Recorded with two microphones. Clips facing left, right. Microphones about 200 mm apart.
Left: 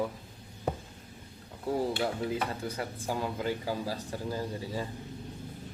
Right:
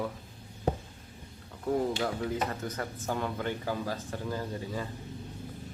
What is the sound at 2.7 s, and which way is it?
Speech, 10° left (ahead or behind).